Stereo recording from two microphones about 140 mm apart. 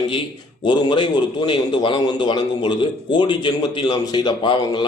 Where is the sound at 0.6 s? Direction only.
35° left (ahead or behind).